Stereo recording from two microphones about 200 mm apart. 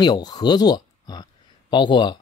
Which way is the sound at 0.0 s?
20° left (ahead or behind).